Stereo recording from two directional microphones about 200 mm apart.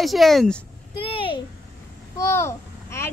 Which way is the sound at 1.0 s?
25° left (ahead or behind).